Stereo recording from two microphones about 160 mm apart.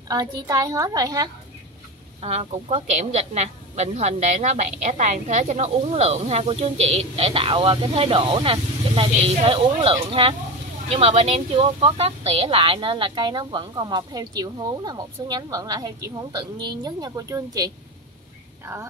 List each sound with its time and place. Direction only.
0.1 s speech: 25° right (ahead or behind)
2.2 s a woman's voice: 40° right (ahead or behind); by 17.6 s 20° right (ahead or behind)